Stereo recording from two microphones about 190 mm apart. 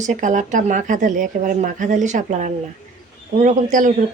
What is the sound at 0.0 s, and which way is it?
Speech, 40° right (ahead or behind).